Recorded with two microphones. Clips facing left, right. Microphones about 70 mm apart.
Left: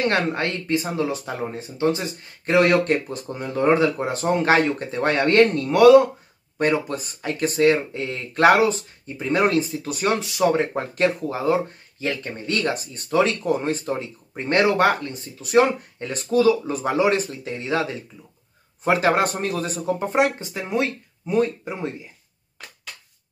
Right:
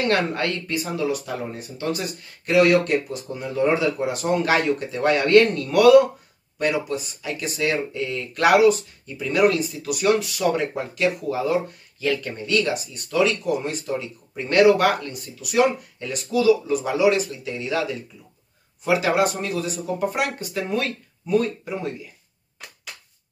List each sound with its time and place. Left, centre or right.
0.1 s speech: left
6.9 s speech: left
20.0 s speech: left